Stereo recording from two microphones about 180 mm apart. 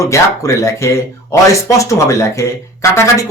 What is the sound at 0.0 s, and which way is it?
Speech, 15° left (ahead or behind).